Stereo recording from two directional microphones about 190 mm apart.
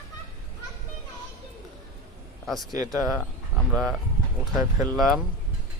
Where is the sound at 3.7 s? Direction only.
Centre (ahead or behind).